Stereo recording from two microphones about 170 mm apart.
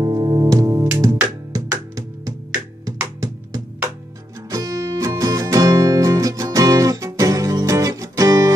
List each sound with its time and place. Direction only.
0.0 s music: 25° right (ahead or behind)
4.5 s music: 20° right (ahead or behind)